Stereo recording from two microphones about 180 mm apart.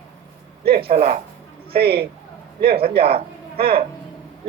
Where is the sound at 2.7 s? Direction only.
30° right (ahead or behind).